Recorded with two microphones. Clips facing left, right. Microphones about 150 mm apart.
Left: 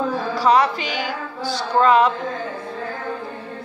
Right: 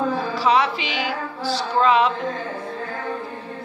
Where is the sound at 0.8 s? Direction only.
Centre (ahead or behind).